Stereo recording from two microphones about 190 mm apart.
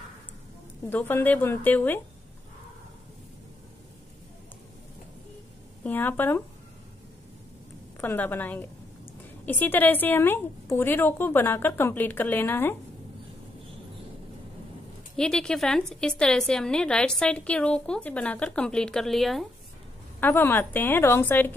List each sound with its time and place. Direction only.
0.8 s a woman's voice: 10° left (ahead or behind)
5.9 s a woman's voice: 10° left (ahead or behind)
8.0 s a woman's voice: 10° left (ahead or behind)
15.1 s a woman's voice: 5° left (ahead or behind)